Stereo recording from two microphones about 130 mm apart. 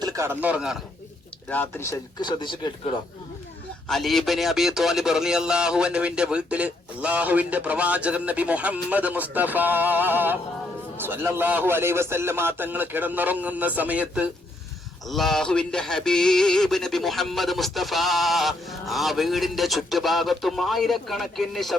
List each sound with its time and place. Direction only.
0.0 s a sound: 25° right (ahead or behind)
0.4 s speech: 5° right (ahead or behind)
1.5 s speech: 20° left (ahead or behind)
2.2 s speech: 35° left (ahead or behind)
3.8 s speech: centre (ahead or behind)
15.1 s a sound: centre (ahead or behind)